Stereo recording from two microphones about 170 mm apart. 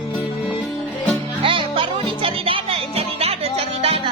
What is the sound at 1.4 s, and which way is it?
Music, 30° right (ahead or behind).